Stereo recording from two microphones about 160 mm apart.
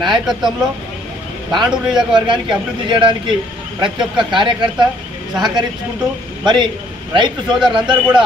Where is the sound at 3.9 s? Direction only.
30° right (ahead or behind).